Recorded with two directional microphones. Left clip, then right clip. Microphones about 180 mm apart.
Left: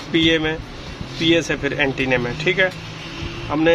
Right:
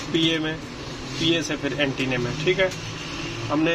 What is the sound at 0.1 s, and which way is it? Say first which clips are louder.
Speech: left 6 dB; 35° left (ahead or behind).